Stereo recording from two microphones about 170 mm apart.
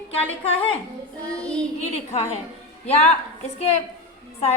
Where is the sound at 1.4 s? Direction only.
5° left (ahead or behind).